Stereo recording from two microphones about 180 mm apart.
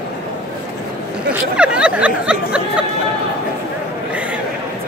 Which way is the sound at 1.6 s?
5° right (ahead or behind).